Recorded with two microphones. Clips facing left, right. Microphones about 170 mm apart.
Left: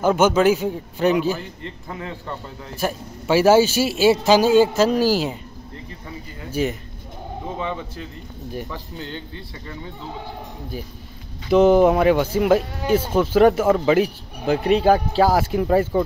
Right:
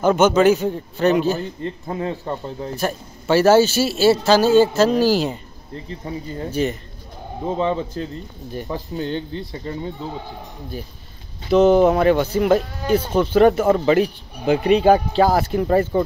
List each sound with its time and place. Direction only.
0.0 s a man's voice: 10° left (ahead or behind)
1.6 s speech: 30° right (ahead or behind)
2.7 s a man's voice: 10° left (ahead or behind)
6.5 s a man's voice: 10° left (ahead or behind)
7.6 s speech: 30° right (ahead or behind)
9.0 s speech: 20° right (ahead or behind)
11.5 s a man's voice: 10° left (ahead or behind)